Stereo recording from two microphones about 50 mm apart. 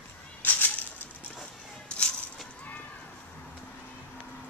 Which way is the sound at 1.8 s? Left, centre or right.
Left.